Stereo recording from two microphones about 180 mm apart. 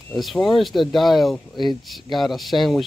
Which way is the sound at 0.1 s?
Centre (ahead or behind).